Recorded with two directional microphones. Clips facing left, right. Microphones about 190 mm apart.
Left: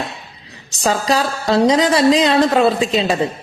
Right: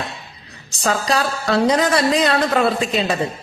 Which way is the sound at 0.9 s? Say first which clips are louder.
Left 2 dB; 25° left (ahead or behind).